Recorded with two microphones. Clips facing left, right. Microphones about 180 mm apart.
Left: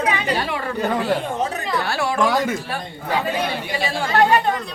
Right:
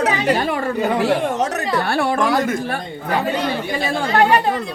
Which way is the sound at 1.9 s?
55° right (ahead or behind).